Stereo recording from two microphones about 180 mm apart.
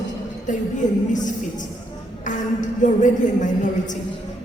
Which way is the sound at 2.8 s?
45° left (ahead or behind).